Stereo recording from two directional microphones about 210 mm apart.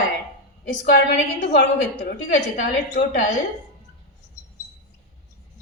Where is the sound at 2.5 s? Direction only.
55° left (ahead or behind).